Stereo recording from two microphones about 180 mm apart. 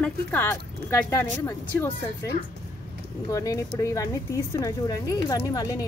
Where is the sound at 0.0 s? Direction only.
10° left (ahead or behind).